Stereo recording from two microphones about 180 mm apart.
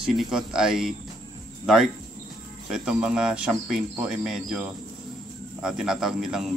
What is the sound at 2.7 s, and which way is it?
A man's voice, 5° right (ahead or behind).